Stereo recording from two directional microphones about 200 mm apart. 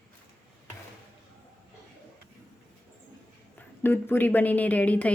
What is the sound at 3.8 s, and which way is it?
Speech, 10° left (ahead or behind).